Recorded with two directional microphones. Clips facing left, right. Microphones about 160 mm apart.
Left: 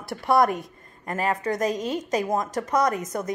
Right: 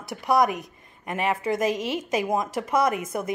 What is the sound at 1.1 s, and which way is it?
A woman's voice, 10° right (ahead or behind).